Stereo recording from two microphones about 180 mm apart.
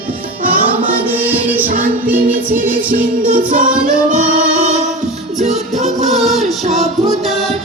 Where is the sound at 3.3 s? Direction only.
45° right (ahead or behind).